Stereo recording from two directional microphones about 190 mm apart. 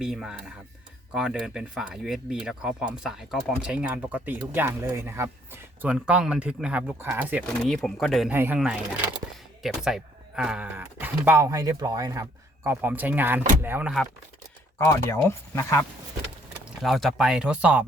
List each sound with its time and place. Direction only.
0.0 s speech: centre (ahead or behind)
7.4 s speech: centre (ahead or behind)
8.3 s speech: 10° right (ahead or behind)
14.8 s speech: 15° left (ahead or behind)
16.8 s speech: centre (ahead or behind)